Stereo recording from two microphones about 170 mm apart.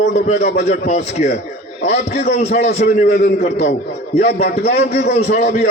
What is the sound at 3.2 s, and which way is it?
A man's voice, 70° left (ahead or behind).